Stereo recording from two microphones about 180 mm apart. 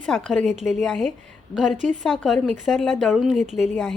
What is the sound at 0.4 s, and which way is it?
Speech, 40° right (ahead or behind).